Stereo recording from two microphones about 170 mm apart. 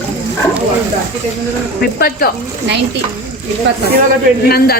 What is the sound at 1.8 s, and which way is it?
Speech, 60° left (ahead or behind).